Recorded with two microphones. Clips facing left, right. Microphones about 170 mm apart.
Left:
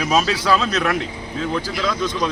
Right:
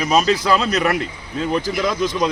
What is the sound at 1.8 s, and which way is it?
Speech, 20° right (ahead or behind).